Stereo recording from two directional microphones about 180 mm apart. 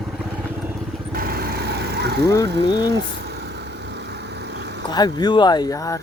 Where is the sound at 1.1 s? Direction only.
55° right (ahead or behind).